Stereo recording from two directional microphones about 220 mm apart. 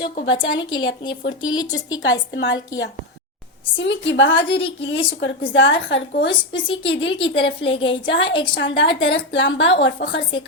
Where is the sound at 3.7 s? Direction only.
55° left (ahead or behind).